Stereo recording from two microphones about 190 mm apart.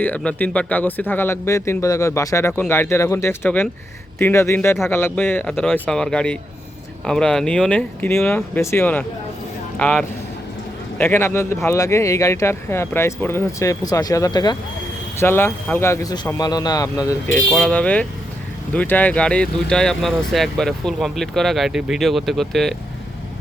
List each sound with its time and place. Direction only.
0.0 s a man's voice: 5° left (ahead or behind)
17.5 s speech: 5° left (ahead or behind)